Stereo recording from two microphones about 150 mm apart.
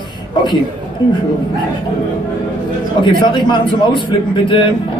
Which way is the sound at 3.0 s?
30° left (ahead or behind).